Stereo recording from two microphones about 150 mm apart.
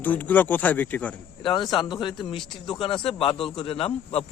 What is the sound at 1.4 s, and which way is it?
A man's voice, 30° left (ahead or behind).